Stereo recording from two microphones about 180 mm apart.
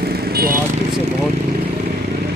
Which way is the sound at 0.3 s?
55° right (ahead or behind).